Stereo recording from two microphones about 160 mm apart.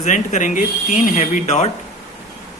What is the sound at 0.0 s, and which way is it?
Speech, 50° left (ahead or behind).